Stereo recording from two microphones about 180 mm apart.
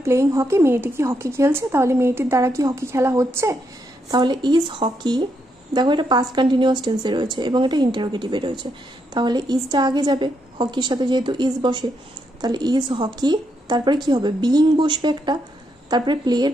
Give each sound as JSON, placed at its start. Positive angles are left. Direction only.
{"t": 0.0, "sound": "a woman's voice", "side_deg": -15}